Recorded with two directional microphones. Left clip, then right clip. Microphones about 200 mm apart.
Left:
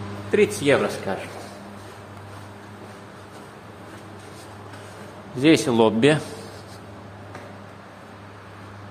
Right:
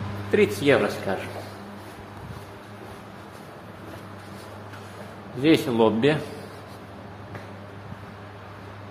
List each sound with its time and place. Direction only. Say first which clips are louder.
0.3 s speech: left 1 dB; centre (ahead or behind)
5.4 s a man's voice: left 2 dB; 25° left (ahead or behind)